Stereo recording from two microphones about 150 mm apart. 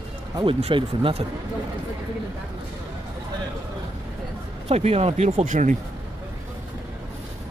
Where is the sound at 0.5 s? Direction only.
40° right (ahead or behind).